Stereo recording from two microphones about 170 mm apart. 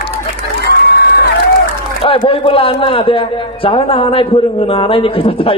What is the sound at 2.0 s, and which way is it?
A man's voice, 30° left (ahead or behind).